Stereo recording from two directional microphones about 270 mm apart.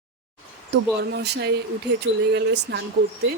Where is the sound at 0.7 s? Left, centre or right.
Right.